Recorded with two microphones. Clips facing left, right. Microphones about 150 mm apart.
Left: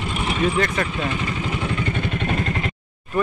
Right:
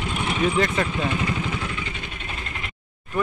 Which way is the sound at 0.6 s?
10° right (ahead or behind).